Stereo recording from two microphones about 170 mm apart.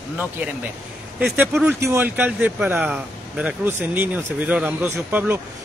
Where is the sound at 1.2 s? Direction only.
10° right (ahead or behind).